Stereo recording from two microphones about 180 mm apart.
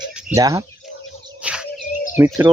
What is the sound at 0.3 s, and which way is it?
Speech, 15° right (ahead or behind).